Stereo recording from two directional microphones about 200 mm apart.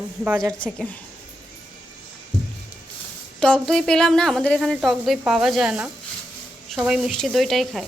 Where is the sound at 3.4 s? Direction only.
5° left (ahead or behind).